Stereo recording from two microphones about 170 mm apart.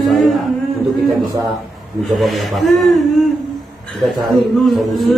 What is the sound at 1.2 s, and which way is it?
Speech, 20° right (ahead or behind).